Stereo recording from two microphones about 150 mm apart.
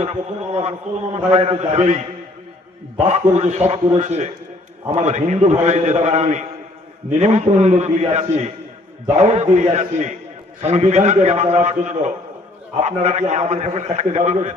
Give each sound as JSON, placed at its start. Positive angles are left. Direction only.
{"t": 0.0, "sound": "a man's voice", "side_deg": -45}
{"t": 3.1, "sound": "a man's voice", "side_deg": -45}